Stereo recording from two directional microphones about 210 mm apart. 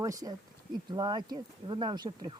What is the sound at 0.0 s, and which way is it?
Speech, 15° right (ahead or behind).